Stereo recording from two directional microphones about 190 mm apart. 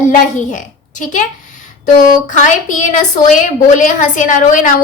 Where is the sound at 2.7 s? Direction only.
40° left (ahead or behind).